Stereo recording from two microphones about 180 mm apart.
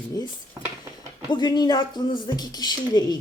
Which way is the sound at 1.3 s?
25° left (ahead or behind).